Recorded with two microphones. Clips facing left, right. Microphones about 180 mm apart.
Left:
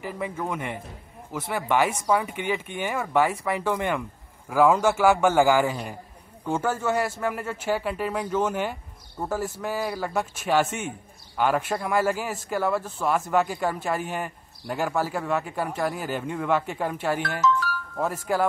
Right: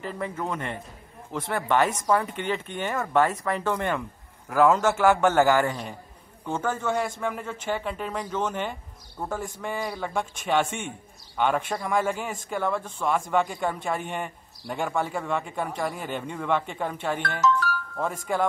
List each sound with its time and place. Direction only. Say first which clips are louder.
0.0 s a man's voice: left 1 dB; 10° left (ahead or behind)
17.5 s music: right 1 dB; 55° right (ahead or behind)
18.0 s speech: left 2 dB; 5° left (ahead or behind)